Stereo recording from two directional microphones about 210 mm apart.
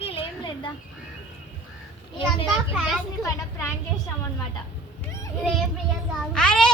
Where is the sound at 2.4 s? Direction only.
5° right (ahead or behind).